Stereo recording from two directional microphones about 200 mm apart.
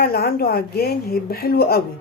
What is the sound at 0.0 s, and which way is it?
Speech, 50° left (ahead or behind).